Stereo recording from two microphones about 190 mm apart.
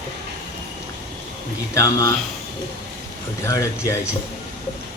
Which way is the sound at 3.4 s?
15° left (ahead or behind).